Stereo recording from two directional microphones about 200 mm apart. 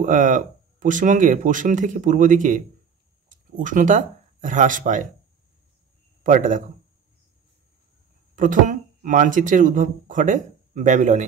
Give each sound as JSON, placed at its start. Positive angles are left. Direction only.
{"t": 0.0, "sound": "speech", "side_deg": -40}
{"t": 6.2, "sound": "speech", "side_deg": -40}
{"t": 8.4, "sound": "speech", "side_deg": -40}